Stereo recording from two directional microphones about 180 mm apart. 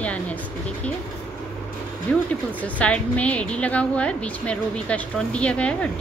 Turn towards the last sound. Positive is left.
turn(degrees=5)  # may be behind; listen again after turning